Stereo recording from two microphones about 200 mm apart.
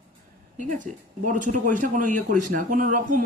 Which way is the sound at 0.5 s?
40° right (ahead or behind).